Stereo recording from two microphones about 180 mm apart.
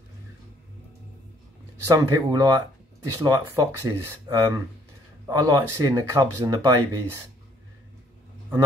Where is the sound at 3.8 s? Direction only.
20° right (ahead or behind).